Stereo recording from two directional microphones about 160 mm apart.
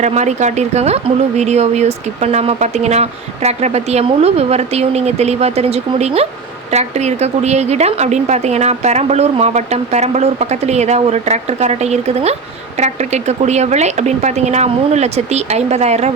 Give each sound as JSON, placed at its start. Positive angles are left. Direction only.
{"t": 0.0, "sound": "a woman's voice", "side_deg": -45}